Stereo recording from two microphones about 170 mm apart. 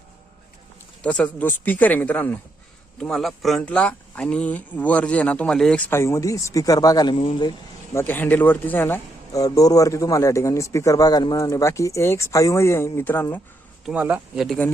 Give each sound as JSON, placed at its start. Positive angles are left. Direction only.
{"t": 1.0, "sound": "speech", "side_deg": 5}
{"t": 7.9, "sound": "speech", "side_deg": 10}
{"t": 13.8, "sound": "speech", "side_deg": -10}